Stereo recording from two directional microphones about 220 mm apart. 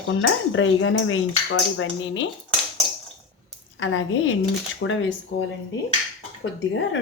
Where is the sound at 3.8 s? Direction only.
60° left (ahead or behind).